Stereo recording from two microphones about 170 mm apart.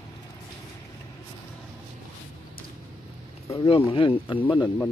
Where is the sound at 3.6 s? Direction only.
35° left (ahead or behind).